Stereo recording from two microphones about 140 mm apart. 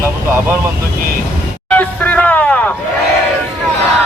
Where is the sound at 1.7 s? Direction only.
10° left (ahead or behind).